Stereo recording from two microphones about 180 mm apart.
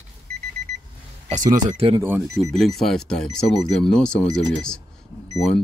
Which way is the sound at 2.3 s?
Centre (ahead or behind).